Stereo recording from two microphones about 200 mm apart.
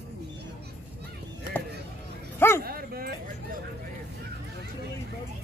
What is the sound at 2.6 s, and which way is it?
Bow-wow, 50° right (ahead or behind).